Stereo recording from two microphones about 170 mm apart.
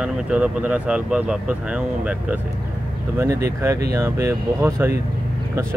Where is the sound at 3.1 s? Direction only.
15° right (ahead or behind).